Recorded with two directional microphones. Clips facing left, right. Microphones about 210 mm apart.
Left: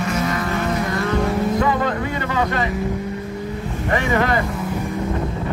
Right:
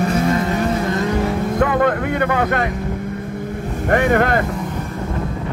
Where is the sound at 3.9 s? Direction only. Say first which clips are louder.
Right 4 dB; 55° right (ahead or behind).